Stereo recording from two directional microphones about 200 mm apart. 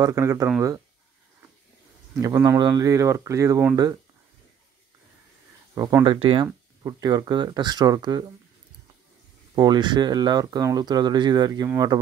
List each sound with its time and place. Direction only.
0.0 s speech: 15° right (ahead or behind)
2.1 s speech: 15° right (ahead or behind)
5.8 s speech: 20° right (ahead or behind)
9.6 s speech: 20° right (ahead or behind)